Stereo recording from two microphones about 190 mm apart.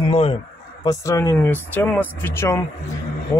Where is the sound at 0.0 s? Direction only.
30° left (ahead or behind).